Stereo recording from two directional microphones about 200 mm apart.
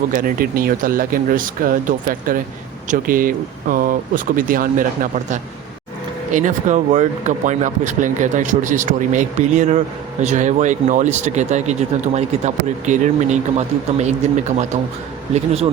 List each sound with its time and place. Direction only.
0.1 s speech: 45° right (ahead or behind)